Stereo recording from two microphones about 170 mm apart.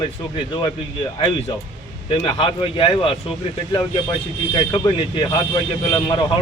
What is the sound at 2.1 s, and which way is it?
A man's voice, 30° left (ahead or behind).